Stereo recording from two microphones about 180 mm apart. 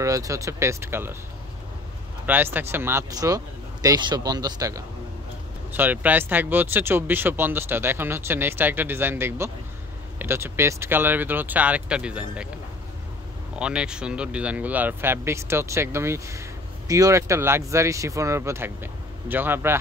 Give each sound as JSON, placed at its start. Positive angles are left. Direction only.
{"t": 0.0, "sound": "speech", "side_deg": -15}
{"t": 2.2, "sound": "speech", "side_deg": -10}
{"t": 13.6, "sound": "speech", "side_deg": -5}